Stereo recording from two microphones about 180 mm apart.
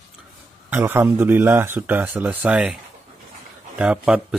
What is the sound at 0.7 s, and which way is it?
Speech, 10° right (ahead or behind).